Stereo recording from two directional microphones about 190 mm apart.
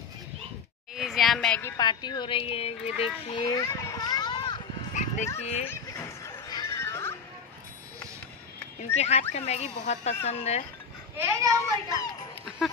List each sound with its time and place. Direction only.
0.9 s a woman's voice: centre (ahead or behind); by 3.1 s 30° left (ahead or behind)
3.3 s a sound: 25° left (ahead or behind)
4.9 s bow-wow: 40° left (ahead or behind)
5.4 s speech: 35° left (ahead or behind)
6.2 s music: 15° left (ahead or behind)
8.9 s speech: 35° left (ahead or behind)
11.1 s a child's voice: 15° right (ahead or behind)